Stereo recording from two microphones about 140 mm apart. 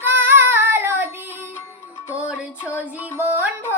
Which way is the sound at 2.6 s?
15° left (ahead or behind).